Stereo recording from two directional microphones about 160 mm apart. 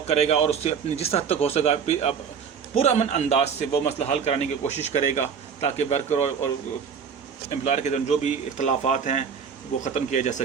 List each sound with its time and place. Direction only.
0.1 s a man's voice: 40° left (ahead or behind)
7.6 s a man's voice: 45° left (ahead or behind)